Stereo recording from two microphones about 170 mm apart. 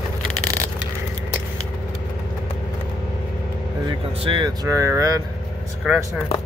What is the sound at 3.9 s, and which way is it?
Speech, 30° right (ahead or behind).